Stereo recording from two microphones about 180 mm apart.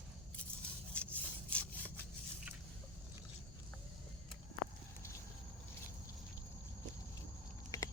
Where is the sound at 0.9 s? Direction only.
5° left (ahead or behind).